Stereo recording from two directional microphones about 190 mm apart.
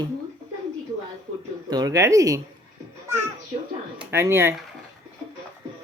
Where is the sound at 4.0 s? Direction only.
10° right (ahead or behind).